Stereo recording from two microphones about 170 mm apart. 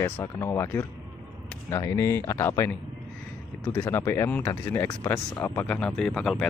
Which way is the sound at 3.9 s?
15° left (ahead or behind).